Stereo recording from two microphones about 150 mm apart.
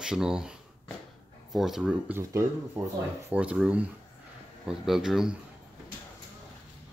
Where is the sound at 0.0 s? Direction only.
5° right (ahead or behind).